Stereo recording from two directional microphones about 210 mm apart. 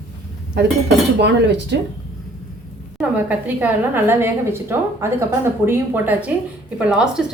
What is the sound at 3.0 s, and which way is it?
A woman's voice, 5° right (ahead or behind).